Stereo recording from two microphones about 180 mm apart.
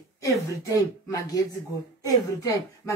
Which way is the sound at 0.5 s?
20° left (ahead or behind).